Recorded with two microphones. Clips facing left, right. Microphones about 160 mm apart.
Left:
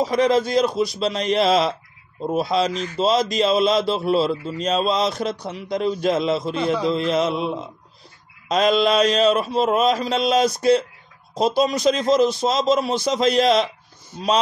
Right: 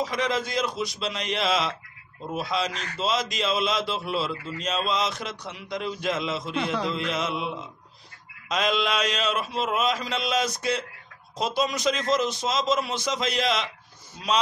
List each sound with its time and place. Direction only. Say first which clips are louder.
0.0 s a man's voice: left 9 dB; 35° left (ahead or behind)